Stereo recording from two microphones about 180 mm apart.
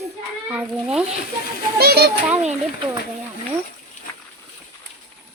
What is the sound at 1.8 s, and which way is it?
Speech, 60° right (ahead or behind).